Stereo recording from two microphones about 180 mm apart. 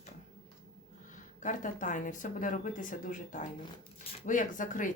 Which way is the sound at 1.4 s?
45° left (ahead or behind).